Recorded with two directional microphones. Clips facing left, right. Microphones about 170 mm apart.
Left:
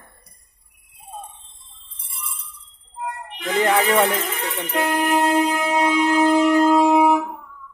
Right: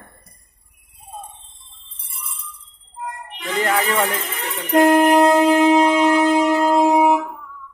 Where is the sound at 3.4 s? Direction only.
15° left (ahead or behind).